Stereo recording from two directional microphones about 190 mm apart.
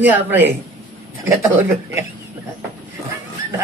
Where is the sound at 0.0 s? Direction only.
10° right (ahead or behind).